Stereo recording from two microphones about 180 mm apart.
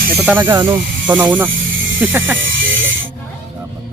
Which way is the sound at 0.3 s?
10° right (ahead or behind).